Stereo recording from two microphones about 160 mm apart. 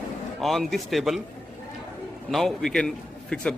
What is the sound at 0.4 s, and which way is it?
Speech, centre (ahead or behind).